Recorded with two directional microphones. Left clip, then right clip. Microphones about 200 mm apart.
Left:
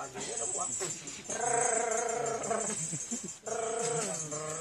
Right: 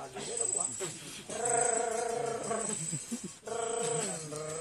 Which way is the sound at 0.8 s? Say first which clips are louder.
Left 2 dB; 10° right (ahead or behind).